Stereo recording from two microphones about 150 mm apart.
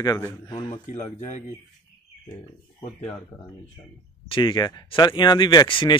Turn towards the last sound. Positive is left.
turn(degrees=30)  # may be behind; listen again after turning